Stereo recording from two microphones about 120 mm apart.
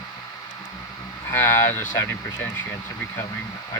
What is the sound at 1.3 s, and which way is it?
Speech, 20° left (ahead or behind).